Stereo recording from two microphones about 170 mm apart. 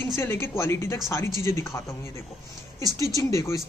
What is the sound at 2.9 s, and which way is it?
Speech, 20° left (ahead or behind).